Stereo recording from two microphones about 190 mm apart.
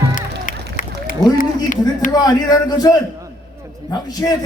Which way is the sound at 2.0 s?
20° left (ahead or behind).